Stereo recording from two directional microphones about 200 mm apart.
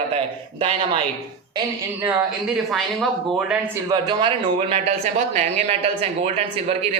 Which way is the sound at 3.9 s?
20° right (ahead or behind).